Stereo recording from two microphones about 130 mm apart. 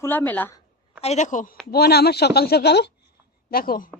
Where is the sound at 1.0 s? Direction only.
60° left (ahead or behind); by 1.6 s 85° left.